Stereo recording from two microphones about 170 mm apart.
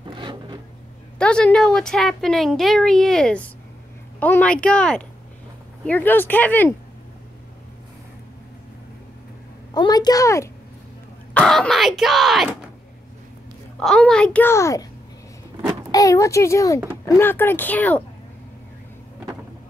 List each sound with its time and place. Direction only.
0.1 s a sound: 30° right (ahead or behind)
1.1 s a woman's voice: 5° left (ahead or behind)
9.8 s a woman's voice: 25° left (ahead or behind)
11.3 s a woman's voice: centre (ahead or behind)
13.7 s a child's voice: 5° left (ahead or behind)
15.9 s a child's voice: 20° left (ahead or behind)